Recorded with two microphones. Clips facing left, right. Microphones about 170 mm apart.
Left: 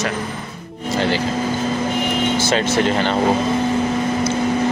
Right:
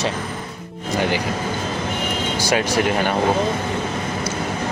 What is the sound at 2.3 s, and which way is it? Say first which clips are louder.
Speech: right 1 dB; 10° right (ahead or behind).